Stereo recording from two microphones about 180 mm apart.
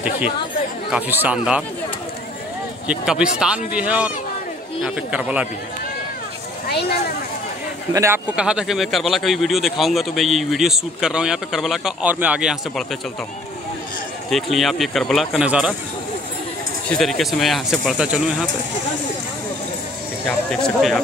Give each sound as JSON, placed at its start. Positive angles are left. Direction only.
{"t": 0.9, "sound": "speech", "side_deg": -10}
{"t": 2.9, "sound": "a man's voice", "side_deg": -5}
{"t": 7.9, "sound": "speech", "side_deg": -15}
{"t": 8.4, "sound": "a man's voice", "side_deg": -5}
{"t": 14.3, "sound": "a man's voice", "side_deg": 0}
{"t": 16.9, "sound": "a man's voice", "side_deg": 0}
{"t": 20.2, "sound": "a man's voice", "side_deg": 0}